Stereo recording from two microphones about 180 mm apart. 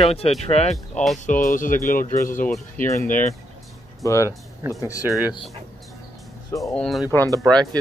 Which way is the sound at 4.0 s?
15° left (ahead or behind).